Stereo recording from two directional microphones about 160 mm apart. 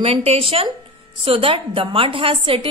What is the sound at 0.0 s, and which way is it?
A woman's voice, 35° right (ahead or behind).